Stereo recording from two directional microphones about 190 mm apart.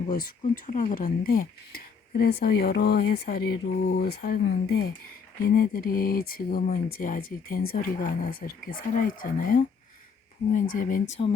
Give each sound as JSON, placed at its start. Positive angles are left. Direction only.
{"t": 0.1, "sound": "speech", "side_deg": 50}